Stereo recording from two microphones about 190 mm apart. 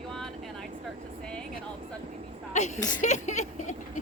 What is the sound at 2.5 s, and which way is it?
Speech, 40° left (ahead or behind).